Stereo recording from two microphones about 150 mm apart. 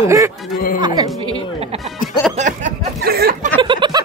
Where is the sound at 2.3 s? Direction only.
60° right (ahead or behind); by 3.4 s 90° right.